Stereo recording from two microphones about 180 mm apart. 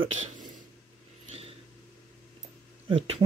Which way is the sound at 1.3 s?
35° right (ahead or behind).